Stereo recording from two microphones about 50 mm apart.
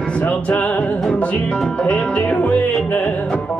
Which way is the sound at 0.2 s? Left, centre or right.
Left.